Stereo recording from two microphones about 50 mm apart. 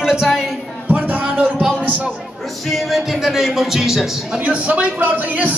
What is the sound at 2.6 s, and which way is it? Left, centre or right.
Speech, centre.